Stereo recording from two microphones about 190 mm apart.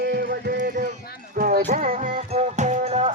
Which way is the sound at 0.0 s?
50° right (ahead or behind).